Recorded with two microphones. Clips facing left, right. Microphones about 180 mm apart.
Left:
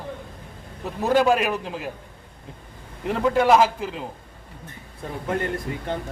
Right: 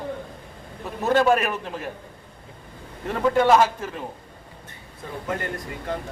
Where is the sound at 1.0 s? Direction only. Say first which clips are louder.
Even; 10° left (ahead or behind).